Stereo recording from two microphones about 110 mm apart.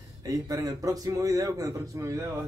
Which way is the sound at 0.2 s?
35° right (ahead or behind).